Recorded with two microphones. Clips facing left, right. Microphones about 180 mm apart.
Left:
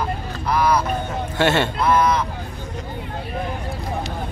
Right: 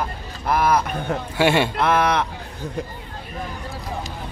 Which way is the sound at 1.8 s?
65° right (ahead or behind).